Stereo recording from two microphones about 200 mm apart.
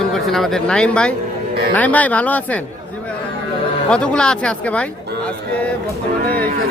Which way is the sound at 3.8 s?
5° left (ahead or behind).